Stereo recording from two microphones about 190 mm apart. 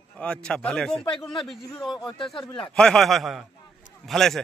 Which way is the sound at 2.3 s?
5° left (ahead or behind).